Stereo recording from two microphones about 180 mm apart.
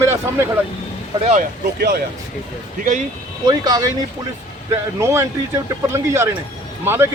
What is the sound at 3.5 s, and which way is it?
Speech, 20° right (ahead or behind).